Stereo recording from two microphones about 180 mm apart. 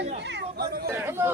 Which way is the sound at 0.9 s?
15° right (ahead or behind).